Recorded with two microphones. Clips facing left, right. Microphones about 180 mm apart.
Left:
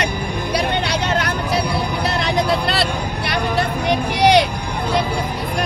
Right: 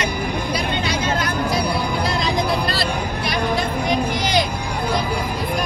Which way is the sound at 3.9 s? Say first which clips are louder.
Left 7 dB; 70° left (ahead or behind).